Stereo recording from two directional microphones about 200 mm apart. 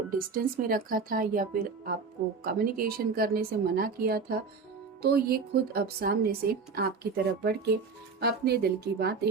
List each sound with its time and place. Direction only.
0.3 s a woman's voice: 45° right (ahead or behind)